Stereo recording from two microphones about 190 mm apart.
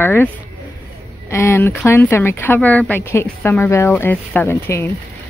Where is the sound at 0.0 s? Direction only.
10° left (ahead or behind).